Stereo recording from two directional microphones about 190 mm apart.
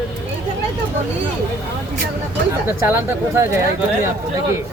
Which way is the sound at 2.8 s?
10° right (ahead or behind).